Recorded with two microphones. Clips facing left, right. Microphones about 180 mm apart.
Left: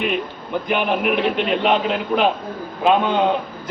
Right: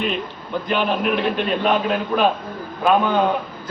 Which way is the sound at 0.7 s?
15° left (ahead or behind).